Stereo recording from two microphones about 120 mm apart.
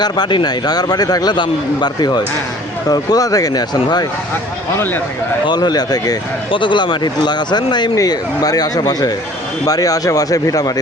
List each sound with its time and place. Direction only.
0.0 s speech: 40° left (ahead or behind)
5.5 s speech: 35° left (ahead or behind)